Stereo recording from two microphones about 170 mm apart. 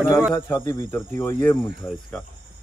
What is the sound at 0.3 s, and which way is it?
Speech, 15° left (ahead or behind).